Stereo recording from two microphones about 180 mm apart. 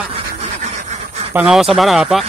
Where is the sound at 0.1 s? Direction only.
40° right (ahead or behind).